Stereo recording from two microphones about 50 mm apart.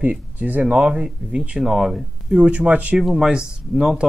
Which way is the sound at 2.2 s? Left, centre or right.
Right.